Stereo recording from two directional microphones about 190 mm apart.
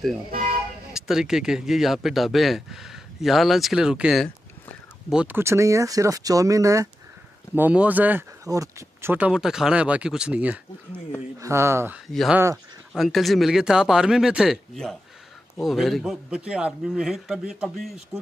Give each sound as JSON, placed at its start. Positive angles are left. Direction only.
{"t": 0.9, "sound": "speech", "side_deg": -5}
{"t": 12.1, "sound": "speech", "side_deg": 0}